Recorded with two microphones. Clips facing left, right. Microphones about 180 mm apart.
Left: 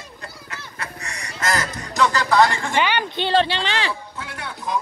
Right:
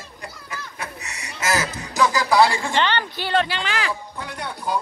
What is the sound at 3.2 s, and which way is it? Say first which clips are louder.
Speech: left 4 dB; 30° left (ahead or behind).